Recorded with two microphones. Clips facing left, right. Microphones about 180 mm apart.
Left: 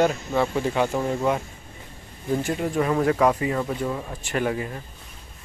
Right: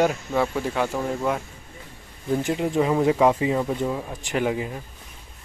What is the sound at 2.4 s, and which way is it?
Speech, 15° right (ahead or behind).